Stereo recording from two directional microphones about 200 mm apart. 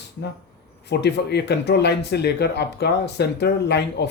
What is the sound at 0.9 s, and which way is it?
Speech, 55° left (ahead or behind).